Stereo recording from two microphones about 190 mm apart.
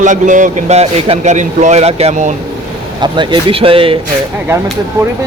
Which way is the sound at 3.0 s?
25° right (ahead or behind).